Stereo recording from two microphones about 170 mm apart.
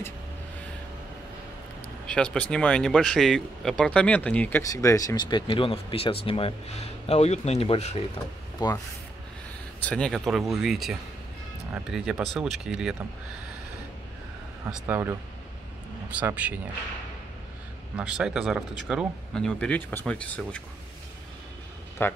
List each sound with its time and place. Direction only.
2.0 s speech: 5° left (ahead or behind); by 8.0 s 35° left (ahead or behind)
9.8 s speech: 5° left (ahead or behind)
14.7 s speech: 10° right (ahead or behind)
17.9 s speech: 5° right (ahead or behind)
22.0 s speech: 10° left (ahead or behind)